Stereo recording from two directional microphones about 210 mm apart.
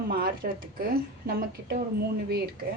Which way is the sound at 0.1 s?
45° right (ahead or behind).